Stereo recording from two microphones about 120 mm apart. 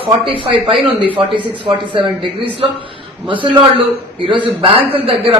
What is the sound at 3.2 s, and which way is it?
A man's voice, 45° right (ahead or behind).